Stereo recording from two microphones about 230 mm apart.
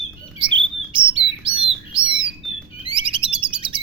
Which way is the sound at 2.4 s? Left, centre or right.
Centre.